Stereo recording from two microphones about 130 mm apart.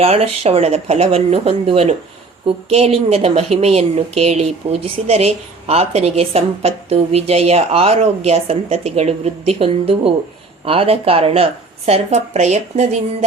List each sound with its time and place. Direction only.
0.0 s a woman's voice: 50° right (ahead or behind)